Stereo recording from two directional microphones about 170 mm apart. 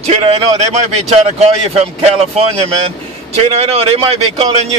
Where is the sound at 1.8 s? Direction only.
35° right (ahead or behind).